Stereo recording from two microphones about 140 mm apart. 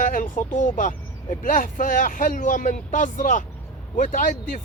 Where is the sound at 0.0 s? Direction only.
75° left (ahead or behind).